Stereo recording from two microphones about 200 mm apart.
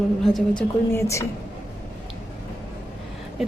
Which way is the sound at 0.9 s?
15° left (ahead or behind).